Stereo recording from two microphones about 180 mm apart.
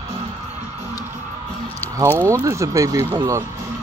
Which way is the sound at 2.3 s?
15° right (ahead or behind).